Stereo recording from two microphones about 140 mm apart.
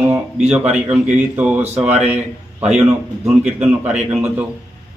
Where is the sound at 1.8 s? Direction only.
50° right (ahead or behind).